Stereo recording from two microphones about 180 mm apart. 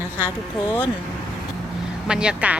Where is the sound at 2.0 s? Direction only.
5° right (ahead or behind).